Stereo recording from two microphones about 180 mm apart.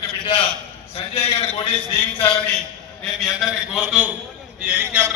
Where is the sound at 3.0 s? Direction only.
Centre (ahead or behind).